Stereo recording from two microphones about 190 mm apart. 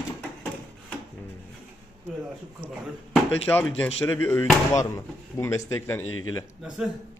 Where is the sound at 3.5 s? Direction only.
10° left (ahead or behind).